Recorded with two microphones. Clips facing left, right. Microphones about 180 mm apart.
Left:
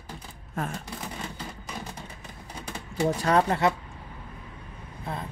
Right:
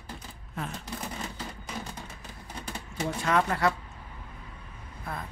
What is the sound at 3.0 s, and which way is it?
Speech, 35° left (ahead or behind).